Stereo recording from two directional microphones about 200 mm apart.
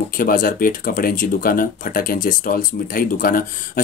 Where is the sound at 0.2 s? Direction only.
45° left (ahead or behind).